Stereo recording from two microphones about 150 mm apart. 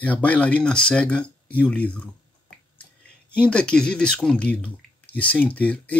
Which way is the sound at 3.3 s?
5° left (ahead or behind).